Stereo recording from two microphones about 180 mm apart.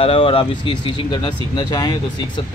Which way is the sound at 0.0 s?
30° left (ahead or behind).